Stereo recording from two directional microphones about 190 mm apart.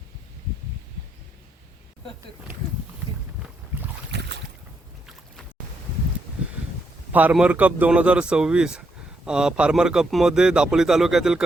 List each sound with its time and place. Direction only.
4.1 s boat: 65° right (ahead or behind)
7.1 s a man's voice: 10° right (ahead or behind)